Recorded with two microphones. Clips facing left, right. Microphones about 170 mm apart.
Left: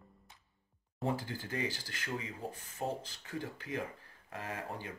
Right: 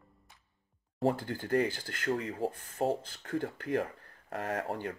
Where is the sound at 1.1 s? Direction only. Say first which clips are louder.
Right 7 dB; 55° right (ahead or behind).